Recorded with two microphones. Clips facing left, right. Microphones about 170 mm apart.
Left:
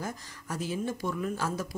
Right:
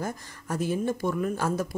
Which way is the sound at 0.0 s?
55° right (ahead or behind).